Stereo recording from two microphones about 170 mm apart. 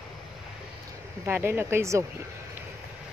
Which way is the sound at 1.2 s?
15° right (ahead or behind).